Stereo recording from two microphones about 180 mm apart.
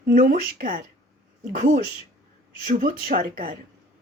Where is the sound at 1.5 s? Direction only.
45° right (ahead or behind).